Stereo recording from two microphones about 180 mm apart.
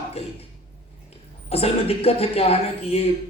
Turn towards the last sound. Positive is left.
turn(degrees=35)  # may be behind; listen again after turning